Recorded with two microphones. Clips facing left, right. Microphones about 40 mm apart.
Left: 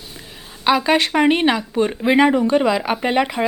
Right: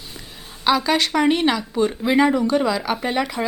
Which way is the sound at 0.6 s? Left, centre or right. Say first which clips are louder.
Left 2 dB; left.